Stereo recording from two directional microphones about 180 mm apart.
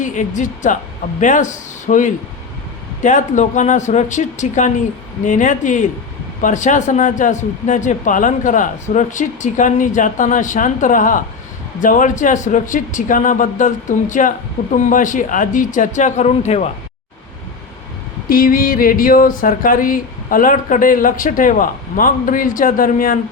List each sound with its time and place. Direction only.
0.0 s speech: 45° left (ahead or behind)
18.3 s speech: 50° left (ahead or behind)